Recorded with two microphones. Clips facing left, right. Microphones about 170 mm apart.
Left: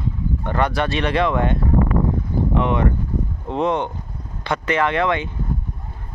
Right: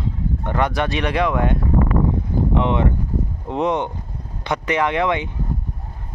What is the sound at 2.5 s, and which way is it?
Speech, 20° right (ahead or behind).